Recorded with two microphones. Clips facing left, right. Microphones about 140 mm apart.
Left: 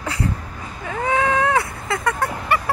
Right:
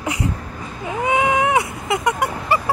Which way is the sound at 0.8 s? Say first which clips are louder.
Right 2 dB; 15° right (ahead or behind).